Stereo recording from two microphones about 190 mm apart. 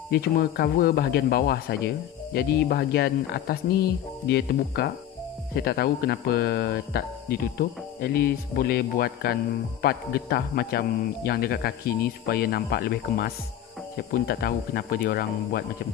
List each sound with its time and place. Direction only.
0.1 s speech: 55° left (ahead or behind)